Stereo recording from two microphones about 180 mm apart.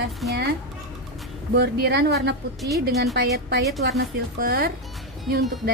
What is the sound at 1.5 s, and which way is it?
Speech, 65° right (ahead or behind).